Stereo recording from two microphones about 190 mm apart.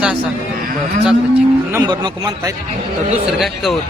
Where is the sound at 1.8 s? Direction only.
20° right (ahead or behind).